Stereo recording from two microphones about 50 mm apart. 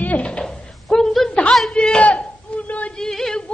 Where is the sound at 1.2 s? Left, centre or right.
Centre.